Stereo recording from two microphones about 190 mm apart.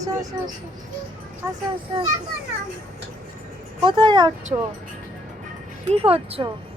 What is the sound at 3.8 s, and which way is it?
Speech, 25° right (ahead or behind).